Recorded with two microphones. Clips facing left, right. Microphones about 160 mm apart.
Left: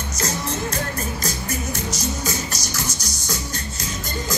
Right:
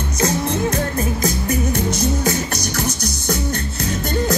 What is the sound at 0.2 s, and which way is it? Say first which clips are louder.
Music: right 7 dB; 55° right (ahead or behind).